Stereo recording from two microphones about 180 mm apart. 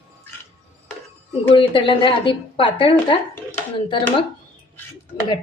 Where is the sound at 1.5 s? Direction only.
30° left (ahead or behind).